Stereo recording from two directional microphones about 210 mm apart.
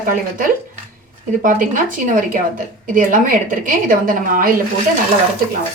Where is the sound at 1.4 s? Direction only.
40° right (ahead or behind).